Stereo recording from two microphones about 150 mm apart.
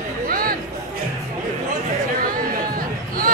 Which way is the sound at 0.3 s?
75° right (ahead or behind).